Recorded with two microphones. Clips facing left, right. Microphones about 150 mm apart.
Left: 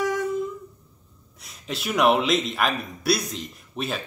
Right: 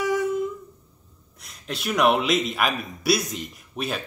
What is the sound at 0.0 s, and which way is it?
Humming, 5° right (ahead or behind).